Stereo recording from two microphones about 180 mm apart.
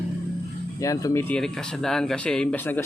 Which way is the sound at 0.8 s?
20° left (ahead or behind).